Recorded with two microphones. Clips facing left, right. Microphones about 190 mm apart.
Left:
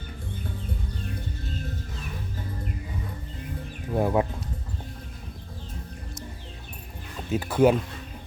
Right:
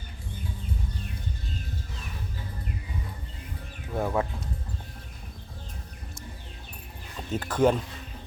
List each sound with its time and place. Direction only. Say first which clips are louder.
3.9 s speech: left 4 dB; 20° left (ahead or behind)
7.3 s speech: left 3 dB; 10° left (ahead or behind)